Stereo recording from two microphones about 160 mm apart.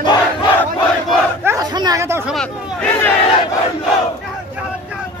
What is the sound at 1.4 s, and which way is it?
Chatter, 20° right (ahead or behind).